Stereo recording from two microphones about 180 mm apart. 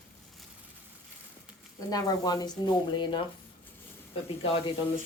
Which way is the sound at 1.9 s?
20° left (ahead or behind).